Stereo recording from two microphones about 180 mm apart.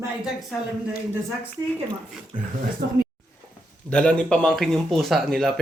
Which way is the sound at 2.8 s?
65° right (ahead or behind).